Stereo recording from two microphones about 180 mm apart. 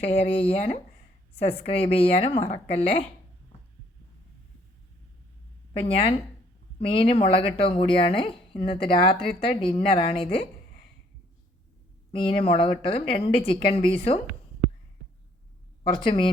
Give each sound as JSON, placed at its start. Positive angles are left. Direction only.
{"t": 0.0, "sound": "speech", "side_deg": 35}
{"t": 5.8, "sound": "speech", "side_deg": 30}
{"t": 12.1, "sound": "speech", "side_deg": 30}